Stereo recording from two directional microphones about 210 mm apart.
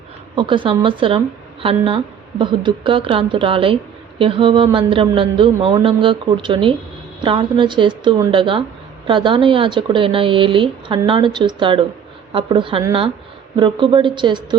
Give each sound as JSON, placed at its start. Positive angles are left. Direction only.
{"t": 0.3, "sound": "speech", "side_deg": -25}